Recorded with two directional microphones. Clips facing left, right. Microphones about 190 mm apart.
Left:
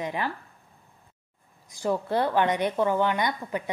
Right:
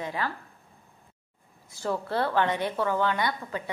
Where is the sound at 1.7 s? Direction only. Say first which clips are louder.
Left 3 dB; 15° left (ahead or behind).